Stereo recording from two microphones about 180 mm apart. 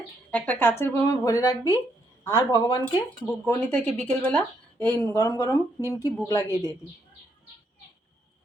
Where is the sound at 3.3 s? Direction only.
10° left (ahead or behind).